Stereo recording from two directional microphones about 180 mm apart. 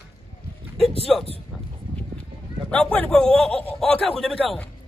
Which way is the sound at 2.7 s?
5° left (ahead or behind).